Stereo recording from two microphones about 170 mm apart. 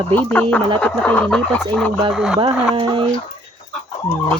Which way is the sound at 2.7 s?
30° right (ahead or behind).